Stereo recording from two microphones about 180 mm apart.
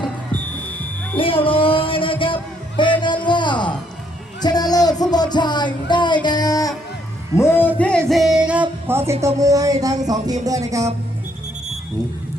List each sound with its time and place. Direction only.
1.1 s speech: 30° left (ahead or behind)
1.5 s music: 30° left (ahead or behind)
4.4 s speech: 20° left (ahead or behind)
6.2 s music: 20° left (ahead or behind)
7.3 s a man's voice: 15° left (ahead or behind)
7.8 s music: 5° left (ahead or behind)
8.9 s speech: 15° right (ahead or behind)
10.4 s music: 20° right (ahead or behind)